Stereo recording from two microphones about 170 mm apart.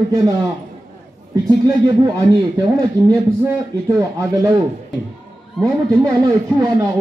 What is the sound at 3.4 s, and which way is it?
Speech, 15° right (ahead or behind).